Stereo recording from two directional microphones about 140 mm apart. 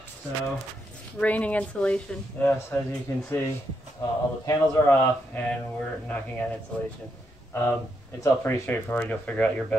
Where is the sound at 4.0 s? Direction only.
25° left (ahead or behind).